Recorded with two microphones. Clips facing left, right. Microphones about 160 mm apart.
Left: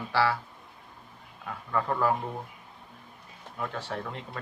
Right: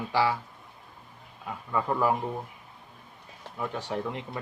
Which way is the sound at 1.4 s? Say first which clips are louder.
Right 1 dB; 15° right (ahead or behind).